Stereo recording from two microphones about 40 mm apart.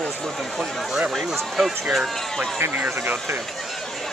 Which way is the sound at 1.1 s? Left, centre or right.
Centre.